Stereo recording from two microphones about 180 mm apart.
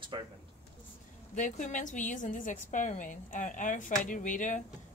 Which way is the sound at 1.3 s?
45° left (ahead or behind).